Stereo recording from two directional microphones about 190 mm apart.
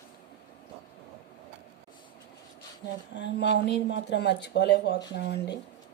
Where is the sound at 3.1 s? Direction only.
70° left (ahead or behind).